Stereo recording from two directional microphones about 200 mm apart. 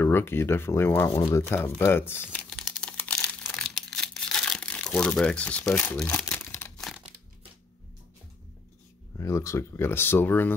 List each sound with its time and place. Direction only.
0.0 s speech: 10° left (ahead or behind)
2.3 s crumpling: 5° left (ahead or behind)
9.1 s speech: 15° left (ahead or behind)